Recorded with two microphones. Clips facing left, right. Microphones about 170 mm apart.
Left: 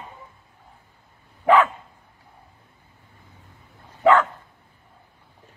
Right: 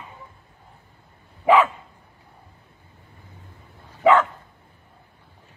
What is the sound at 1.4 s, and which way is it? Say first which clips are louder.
Dog: even; 5° right (ahead or behind).